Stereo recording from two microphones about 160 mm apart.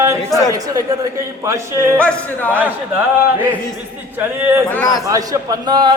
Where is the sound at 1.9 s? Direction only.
10° left (ahead or behind).